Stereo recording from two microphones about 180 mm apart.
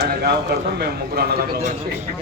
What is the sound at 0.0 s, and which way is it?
A man's voice, 60° right (ahead or behind).